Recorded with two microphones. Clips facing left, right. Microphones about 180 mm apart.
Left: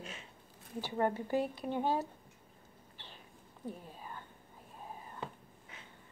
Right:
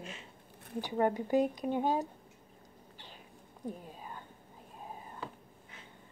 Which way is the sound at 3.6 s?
15° right (ahead or behind).